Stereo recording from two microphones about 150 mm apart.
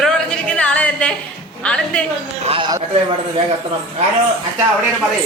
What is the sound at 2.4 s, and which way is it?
Speech, 35° right (ahead or behind).